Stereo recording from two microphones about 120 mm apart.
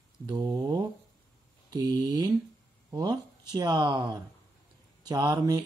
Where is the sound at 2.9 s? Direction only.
35° right (ahead or behind).